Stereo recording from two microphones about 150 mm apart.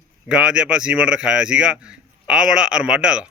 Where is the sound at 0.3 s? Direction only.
5° right (ahead or behind).